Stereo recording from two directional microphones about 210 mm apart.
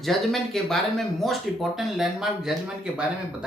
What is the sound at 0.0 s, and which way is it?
Speech, centre (ahead or behind).